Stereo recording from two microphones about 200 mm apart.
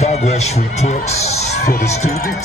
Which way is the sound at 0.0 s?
35° left (ahead or behind).